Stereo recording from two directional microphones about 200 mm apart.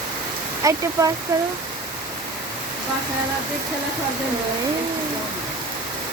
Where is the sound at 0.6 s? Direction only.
15° right (ahead or behind).